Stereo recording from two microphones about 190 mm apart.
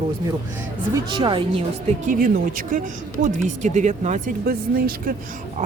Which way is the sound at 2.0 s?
45° right (ahead or behind).